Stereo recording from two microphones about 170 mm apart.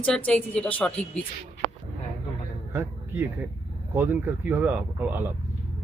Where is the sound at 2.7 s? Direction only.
15° right (ahead or behind).